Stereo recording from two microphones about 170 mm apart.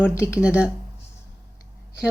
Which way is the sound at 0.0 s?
15° left (ahead or behind).